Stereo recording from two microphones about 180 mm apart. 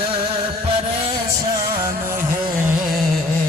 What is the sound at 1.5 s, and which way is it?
Music, 15° right (ahead or behind).